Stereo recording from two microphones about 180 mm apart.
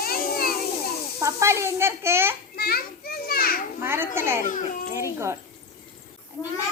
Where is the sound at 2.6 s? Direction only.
60° left (ahead or behind).